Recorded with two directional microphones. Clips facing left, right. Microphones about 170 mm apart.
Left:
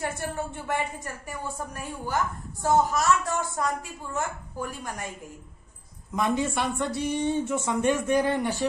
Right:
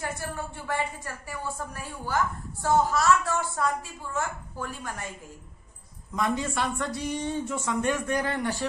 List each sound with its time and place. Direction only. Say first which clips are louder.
0.0 s a woman's voice: left 3 dB; 20° left (ahead or behind)
6.1 s speech: left 2 dB; 20° left (ahead or behind)